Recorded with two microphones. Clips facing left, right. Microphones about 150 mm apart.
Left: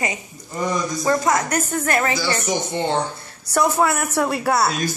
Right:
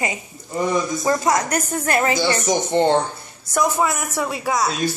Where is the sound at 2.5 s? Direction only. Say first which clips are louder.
Right 8 dB; 35° right (ahead or behind).